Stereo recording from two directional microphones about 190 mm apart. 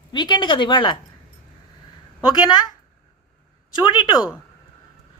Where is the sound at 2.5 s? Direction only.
20° left (ahead or behind).